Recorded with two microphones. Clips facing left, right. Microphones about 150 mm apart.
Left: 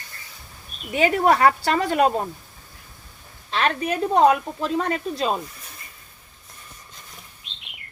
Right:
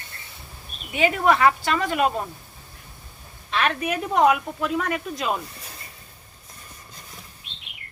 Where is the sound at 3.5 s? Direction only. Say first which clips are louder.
Left 1 dB; 30° left (ahead or behind).